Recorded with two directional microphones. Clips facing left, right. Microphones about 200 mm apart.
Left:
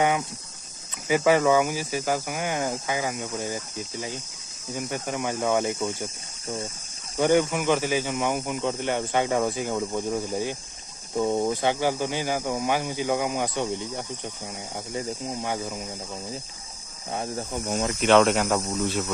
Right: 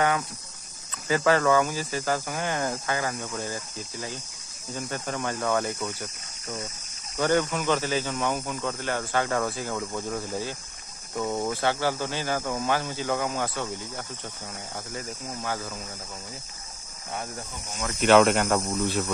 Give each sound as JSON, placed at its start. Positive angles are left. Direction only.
{"t": 1.0, "sound": "speech", "side_deg": 15}
{"t": 7.2, "sound": "speech", "side_deg": 10}
{"t": 15.0, "sound": "cricket", "side_deg": 20}
{"t": 17.1, "sound": "cricket", "side_deg": 25}
{"t": 18.0, "sound": "speech", "side_deg": 0}